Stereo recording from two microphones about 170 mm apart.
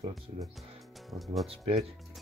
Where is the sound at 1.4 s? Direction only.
40° right (ahead or behind).